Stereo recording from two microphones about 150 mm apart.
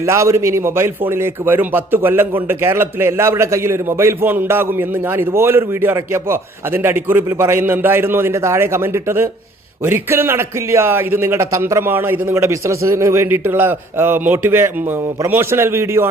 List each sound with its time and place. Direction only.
0.0 s a man's voice: 20° right (ahead or behind)